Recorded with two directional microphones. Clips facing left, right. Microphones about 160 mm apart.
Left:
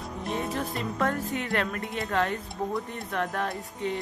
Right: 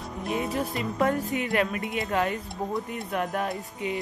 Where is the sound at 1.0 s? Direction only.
15° right (ahead or behind).